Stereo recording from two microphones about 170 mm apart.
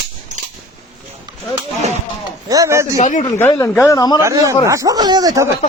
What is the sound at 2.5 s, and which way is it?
Speech, 20° right (ahead or behind).